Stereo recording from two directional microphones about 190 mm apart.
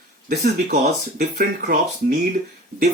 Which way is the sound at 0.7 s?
40° right (ahead or behind).